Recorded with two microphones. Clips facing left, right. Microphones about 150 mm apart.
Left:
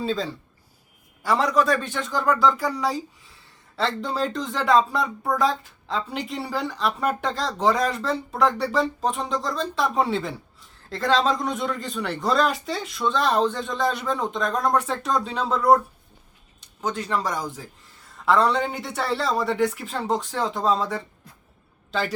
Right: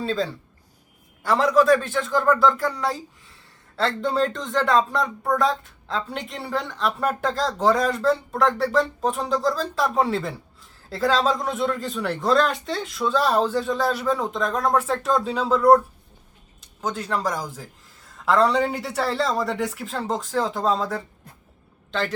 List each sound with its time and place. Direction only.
0.0 s speech: centre (ahead or behind)